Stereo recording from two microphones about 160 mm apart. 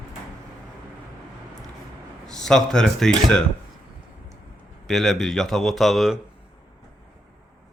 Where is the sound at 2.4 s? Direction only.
5° left (ahead or behind).